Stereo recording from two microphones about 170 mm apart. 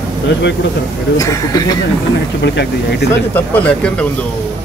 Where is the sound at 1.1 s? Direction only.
20° left (ahead or behind).